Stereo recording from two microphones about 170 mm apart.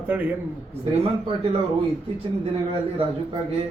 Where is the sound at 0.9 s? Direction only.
35° right (ahead or behind).